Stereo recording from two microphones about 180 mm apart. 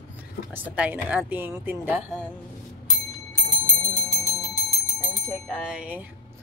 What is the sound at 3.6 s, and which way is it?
Bicycle bell, 15° left (ahead or behind).